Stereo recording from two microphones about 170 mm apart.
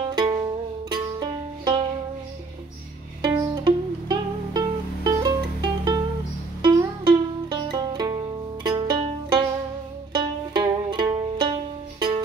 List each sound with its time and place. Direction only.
0.1 s music: 25° right (ahead or behind)
3.2 s music: 25° right (ahead or behind)